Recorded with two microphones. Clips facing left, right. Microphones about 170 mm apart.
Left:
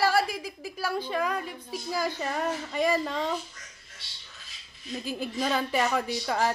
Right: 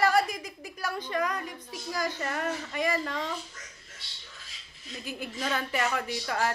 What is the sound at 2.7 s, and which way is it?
Speech, 10° left (ahead or behind).